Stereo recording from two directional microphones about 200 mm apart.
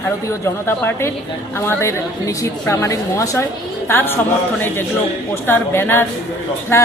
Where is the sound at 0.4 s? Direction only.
10° left (ahead or behind).